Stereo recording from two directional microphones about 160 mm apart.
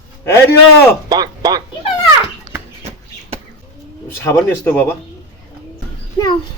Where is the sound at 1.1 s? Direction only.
25° right (ahead or behind).